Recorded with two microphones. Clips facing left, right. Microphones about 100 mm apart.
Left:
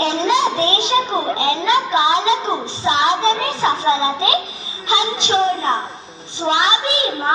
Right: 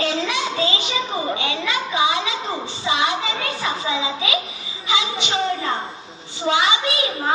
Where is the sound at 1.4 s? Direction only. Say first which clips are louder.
Left 7 dB; 25° left (ahead or behind).